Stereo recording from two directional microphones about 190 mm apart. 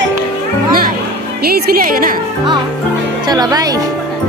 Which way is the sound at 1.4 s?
55° right (ahead or behind).